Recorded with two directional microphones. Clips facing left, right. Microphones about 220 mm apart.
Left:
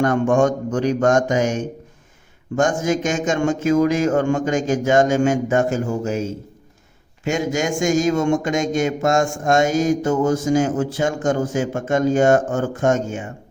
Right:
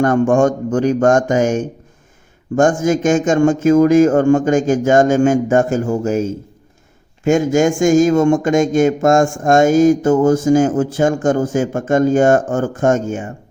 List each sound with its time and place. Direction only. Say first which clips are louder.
0.0 s speech: right 4 dB; 50° right (ahead or behind)
7.3 s speech: right 8 dB; 50° right (ahead or behind)